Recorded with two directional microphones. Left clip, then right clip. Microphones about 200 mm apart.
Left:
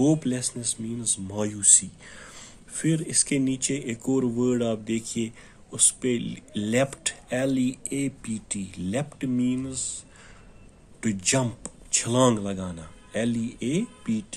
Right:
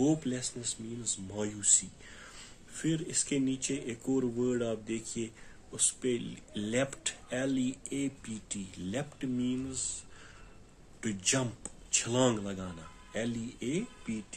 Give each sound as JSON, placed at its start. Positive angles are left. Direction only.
{"t": 0.0, "sound": "speech", "side_deg": 40}
{"t": 11.0, "sound": "speech", "side_deg": 35}